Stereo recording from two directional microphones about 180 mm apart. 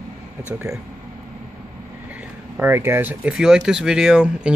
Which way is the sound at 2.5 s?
10° right (ahead or behind).